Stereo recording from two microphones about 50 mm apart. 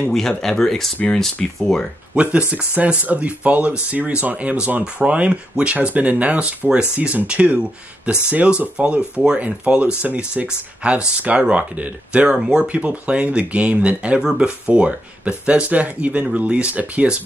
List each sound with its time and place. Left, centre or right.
0.1 s speech: centre
2.1 s speech: right
12.4 s speech: centre
12.6 s speech: right